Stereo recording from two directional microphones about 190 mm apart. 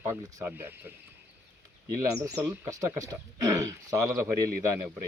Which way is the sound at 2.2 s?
10° right (ahead or behind).